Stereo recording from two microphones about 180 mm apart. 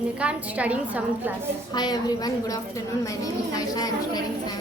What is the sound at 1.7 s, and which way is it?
A woman's voice, 20° left (ahead or behind).